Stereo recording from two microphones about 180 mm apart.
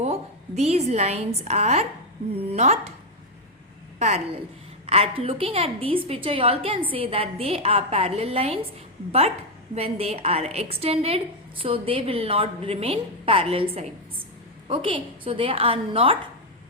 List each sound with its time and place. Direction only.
0.0 s a woman's voice: 35° right (ahead or behind)
4.9 s a woman's voice: 30° right (ahead or behind)
9.7 s a woman's voice: 35° right (ahead or behind)